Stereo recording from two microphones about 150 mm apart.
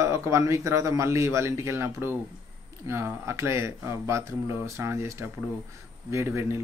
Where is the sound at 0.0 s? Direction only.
20° right (ahead or behind).